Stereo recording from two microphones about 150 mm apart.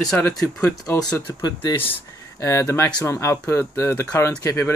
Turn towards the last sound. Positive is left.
turn(degrees=20)  # may be behind; listen again after turning